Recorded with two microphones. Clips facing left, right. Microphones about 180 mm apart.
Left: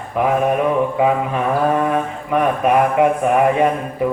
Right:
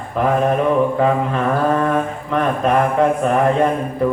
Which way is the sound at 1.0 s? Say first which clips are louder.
Even; 10° left (ahead or behind).